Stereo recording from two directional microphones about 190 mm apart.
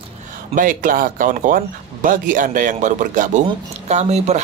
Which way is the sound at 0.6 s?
45° right (ahead or behind).